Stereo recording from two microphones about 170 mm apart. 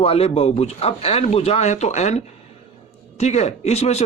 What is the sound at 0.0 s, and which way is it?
Speech, 35° left (ahead or behind).